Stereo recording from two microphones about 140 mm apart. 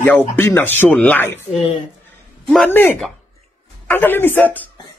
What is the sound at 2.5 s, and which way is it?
A woman's voice, 10° left (ahead or behind).